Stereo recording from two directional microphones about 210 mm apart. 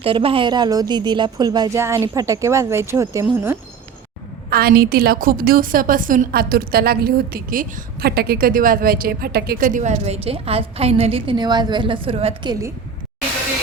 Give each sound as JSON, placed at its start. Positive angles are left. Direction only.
{"t": 0.0, "sound": "speech", "side_deg": -25}
{"t": 4.4, "sound": "a woman's voice", "side_deg": -45}